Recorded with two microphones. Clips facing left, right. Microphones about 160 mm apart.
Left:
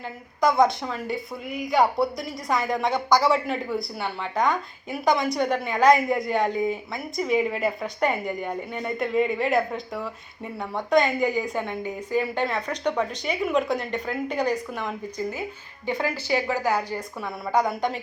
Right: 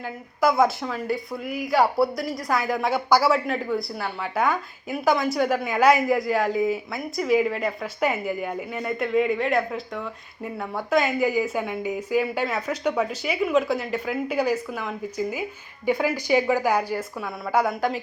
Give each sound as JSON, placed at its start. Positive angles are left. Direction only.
{"t": 0.4, "sound": "speech", "side_deg": -5}
{"t": 17.2, "sound": "speech", "side_deg": 0}